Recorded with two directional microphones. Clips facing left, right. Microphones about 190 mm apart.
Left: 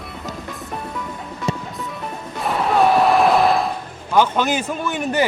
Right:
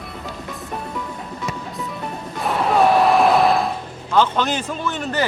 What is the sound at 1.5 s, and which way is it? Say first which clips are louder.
Music: left 7 dB; 30° left (ahead or behind).